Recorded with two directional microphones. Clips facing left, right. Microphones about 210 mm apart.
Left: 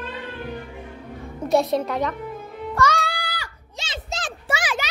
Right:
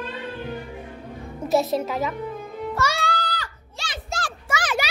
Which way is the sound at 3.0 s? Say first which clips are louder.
Right 4 dB; 10° left (ahead or behind).